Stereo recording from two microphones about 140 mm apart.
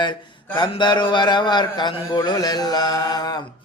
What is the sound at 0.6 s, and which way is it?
A man's voice, 35° left (ahead or behind).